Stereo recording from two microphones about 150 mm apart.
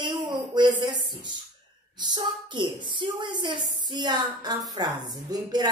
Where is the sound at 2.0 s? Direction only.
30° right (ahead or behind).